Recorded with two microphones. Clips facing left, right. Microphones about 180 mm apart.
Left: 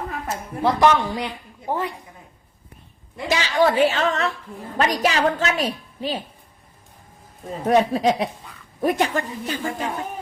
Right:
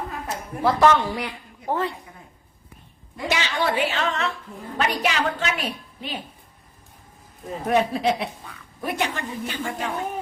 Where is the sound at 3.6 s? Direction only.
40° left (ahead or behind).